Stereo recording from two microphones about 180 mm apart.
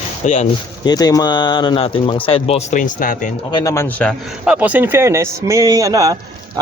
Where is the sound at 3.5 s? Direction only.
15° left (ahead or behind).